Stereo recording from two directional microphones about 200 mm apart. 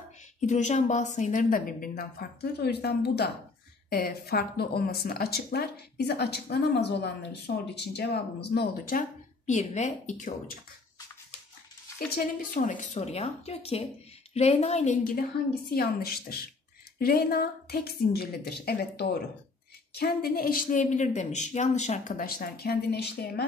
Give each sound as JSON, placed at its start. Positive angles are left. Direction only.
{"t": 0.5, "sound": "speech", "side_deg": 35}
{"t": 9.5, "sound": "a woman's voice", "side_deg": 35}
{"t": 12.4, "sound": "a woman's voice", "side_deg": 40}